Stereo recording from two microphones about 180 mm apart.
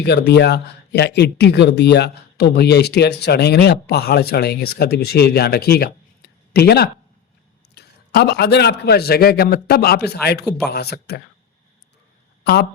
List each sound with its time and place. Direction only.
0.0 s speech: 65° left (ahead or behind)